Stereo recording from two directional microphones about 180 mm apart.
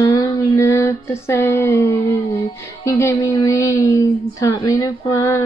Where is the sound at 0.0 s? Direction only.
20° left (ahead or behind).